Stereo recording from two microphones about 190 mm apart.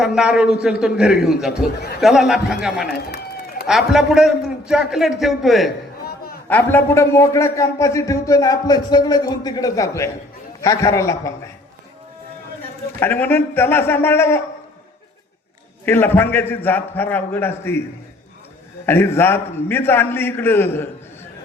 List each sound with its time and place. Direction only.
0.0 s a man's voice: 5° right (ahead or behind)
6.5 s a man's voice: 10° left (ahead or behind)
13.0 s a man's voice: 10° left (ahead or behind)
15.9 s a man's voice: 10° left (ahead or behind)
18.9 s a man's voice: 10° left (ahead or behind)